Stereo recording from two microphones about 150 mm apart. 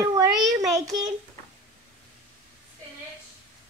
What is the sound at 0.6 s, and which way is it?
Child singing, 25° right (ahead or behind).